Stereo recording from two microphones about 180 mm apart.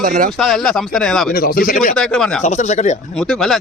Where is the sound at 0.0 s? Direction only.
50° right (ahead or behind).